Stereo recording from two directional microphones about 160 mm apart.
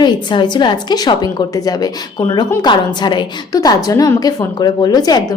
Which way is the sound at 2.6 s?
30° left (ahead or behind).